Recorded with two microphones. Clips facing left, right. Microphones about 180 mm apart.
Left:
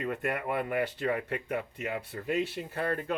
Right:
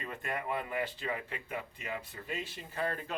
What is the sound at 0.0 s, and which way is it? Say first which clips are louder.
Speech: left 6 dB; 60° left (ahead or behind).